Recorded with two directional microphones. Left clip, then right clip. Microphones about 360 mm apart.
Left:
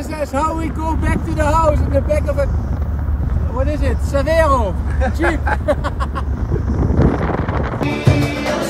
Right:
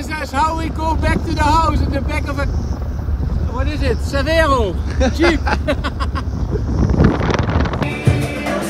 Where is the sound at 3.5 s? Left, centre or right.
Centre.